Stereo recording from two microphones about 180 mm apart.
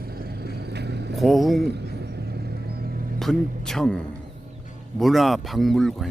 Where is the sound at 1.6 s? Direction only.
65° right (ahead or behind).